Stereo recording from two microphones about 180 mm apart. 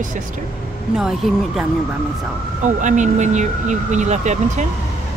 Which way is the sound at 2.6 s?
45° right (ahead or behind).